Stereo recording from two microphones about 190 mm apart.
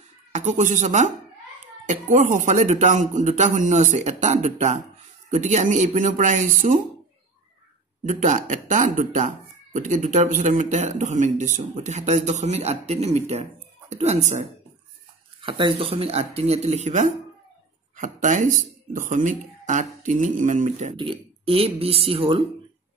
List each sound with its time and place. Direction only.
0.3 s speech: 40° right (ahead or behind)
8.0 s speech: 40° right (ahead or behind)
20.9 s speech: 25° right (ahead or behind)